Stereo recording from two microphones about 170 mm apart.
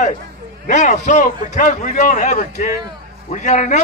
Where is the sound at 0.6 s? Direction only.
45° left (ahead or behind).